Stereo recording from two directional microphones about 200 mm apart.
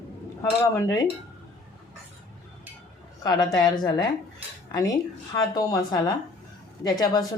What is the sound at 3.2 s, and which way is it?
Speech, 20° left (ahead or behind).